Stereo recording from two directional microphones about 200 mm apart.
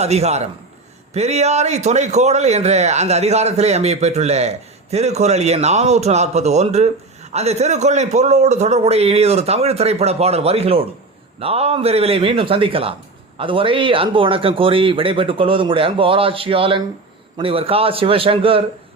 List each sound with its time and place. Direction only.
0.0 s a man's voice: 30° right (ahead or behind)